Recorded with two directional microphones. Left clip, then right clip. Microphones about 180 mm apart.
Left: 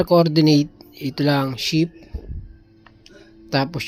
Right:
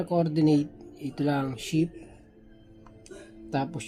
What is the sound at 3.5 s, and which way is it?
Speech, 35° left (ahead or behind).